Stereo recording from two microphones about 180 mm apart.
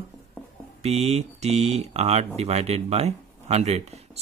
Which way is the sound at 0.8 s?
35° right (ahead or behind).